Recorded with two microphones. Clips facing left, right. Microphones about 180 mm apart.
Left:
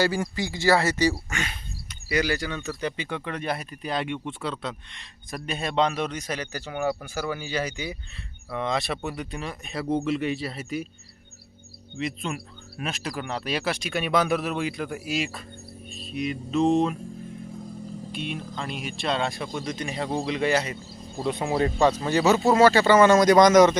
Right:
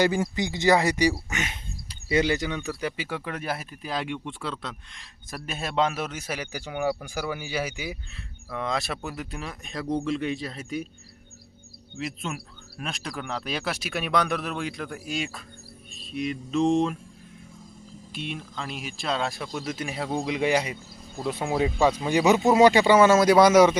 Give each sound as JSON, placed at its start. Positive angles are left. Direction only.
{"t": 0.0, "sound": "speech", "side_deg": -20}
{"t": 11.9, "sound": "speech", "side_deg": 0}
{"t": 15.9, "sound": "music", "side_deg": 0}
{"t": 18.1, "sound": "speech", "side_deg": 0}
{"t": 21.2, "sound": "speech", "side_deg": 0}